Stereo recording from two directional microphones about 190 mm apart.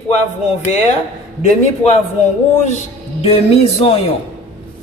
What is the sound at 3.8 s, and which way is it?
Speech, 30° left (ahead or behind).